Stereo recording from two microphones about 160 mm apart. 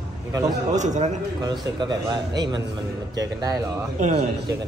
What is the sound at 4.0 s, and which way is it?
Speech, 50° right (ahead or behind).